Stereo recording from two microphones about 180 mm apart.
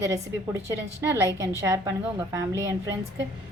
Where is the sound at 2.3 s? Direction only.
20° right (ahead or behind).